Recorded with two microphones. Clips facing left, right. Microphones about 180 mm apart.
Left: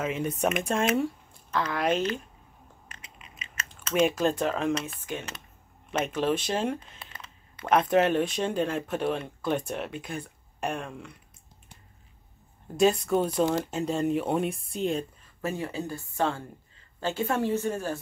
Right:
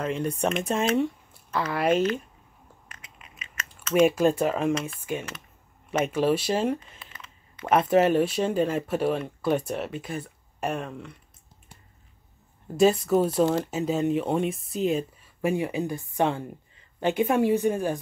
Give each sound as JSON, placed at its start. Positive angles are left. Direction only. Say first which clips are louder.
{"t": 0.0, "sound": "speech", "louder": "right 1 dB", "side_deg": 5}
{"t": 2.9, "sound": "crushing", "louder": "even", "side_deg": 30}
{"t": 3.9, "sound": "speech", "louder": "right 4 dB", "side_deg": -10}
{"t": 7.1, "sound": "computer keyboard", "louder": "left 1 dB", "side_deg": 35}
{"t": 7.6, "sound": "speech", "louder": "right 2 dB", "side_deg": -5}
{"t": 12.7, "sound": "speech", "louder": "right 3 dB", "side_deg": -5}
{"t": 15.4, "sound": "speech", "louder": "right 6 dB", "side_deg": -15}